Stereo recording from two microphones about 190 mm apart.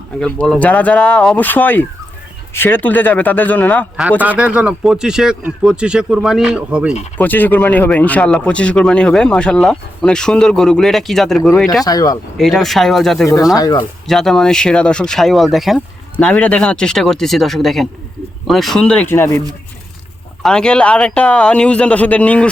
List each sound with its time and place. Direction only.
0.2 s speech: 5° left (ahead or behind)
4.2 s speech: 10° right (ahead or behind)
7.2 s speech: 10° left (ahead or behind)
11.9 s speech: 20° left (ahead or behind)
12.4 s speech: centre (ahead or behind)
13.2 s speech: 20° left (ahead or behind)
14.1 s speech: centre (ahead or behind)
20.4 s speech: 5° left (ahead or behind)